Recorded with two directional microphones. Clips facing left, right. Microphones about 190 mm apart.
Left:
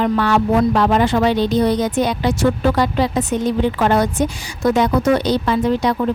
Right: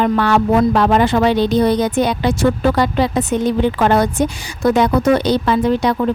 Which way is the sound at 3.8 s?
60° right (ahead or behind).